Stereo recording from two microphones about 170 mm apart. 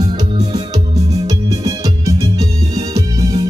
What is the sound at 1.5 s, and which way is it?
Music, 20° right (ahead or behind).